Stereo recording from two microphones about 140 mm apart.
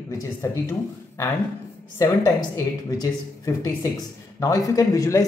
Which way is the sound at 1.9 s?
20° left (ahead or behind).